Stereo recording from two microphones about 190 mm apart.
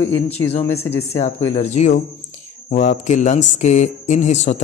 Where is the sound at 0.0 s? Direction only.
10° left (ahead or behind).